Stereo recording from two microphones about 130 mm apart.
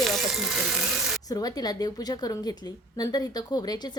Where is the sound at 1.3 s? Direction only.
30° left (ahead or behind).